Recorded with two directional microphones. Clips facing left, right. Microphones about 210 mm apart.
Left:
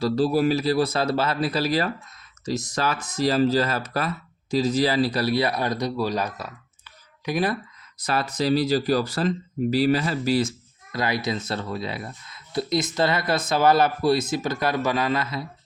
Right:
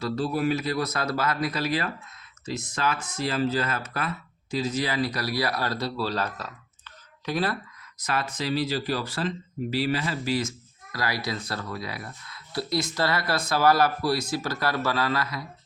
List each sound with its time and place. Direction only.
0.0 s speech: 35° left (ahead or behind); by 7.5 s 15° left (ahead or behind)
8.0 s speech: 35° left (ahead or behind)
10.9 s speech: 20° left (ahead or behind)